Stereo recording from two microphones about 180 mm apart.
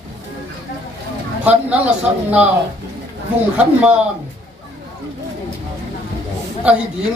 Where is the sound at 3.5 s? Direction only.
10° right (ahead or behind).